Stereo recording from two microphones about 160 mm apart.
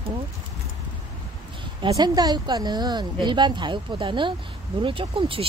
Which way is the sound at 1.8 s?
25° right (ahead or behind).